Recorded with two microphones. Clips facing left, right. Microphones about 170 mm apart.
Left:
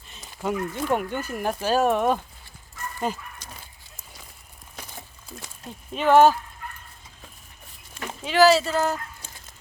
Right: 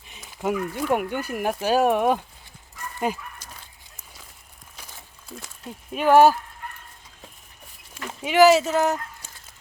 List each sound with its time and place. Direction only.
0.2 s speech: 5° right (ahead or behind)
3.0 s dog: 10° right (ahead or behind)
5.9 s speech: 10° right (ahead or behind)
8.2 s speech: 15° right (ahead or behind)